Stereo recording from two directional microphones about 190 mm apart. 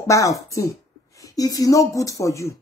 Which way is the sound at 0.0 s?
15° left (ahead or behind).